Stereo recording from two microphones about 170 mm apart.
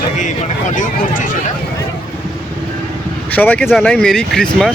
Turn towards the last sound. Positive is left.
turn(degrees=5)  # may be behind; listen again after turning